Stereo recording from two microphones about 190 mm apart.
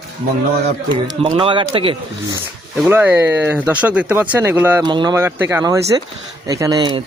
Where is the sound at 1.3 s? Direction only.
30° right (ahead or behind).